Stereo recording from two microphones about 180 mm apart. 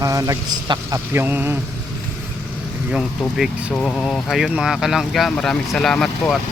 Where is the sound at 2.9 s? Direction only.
Centre (ahead or behind).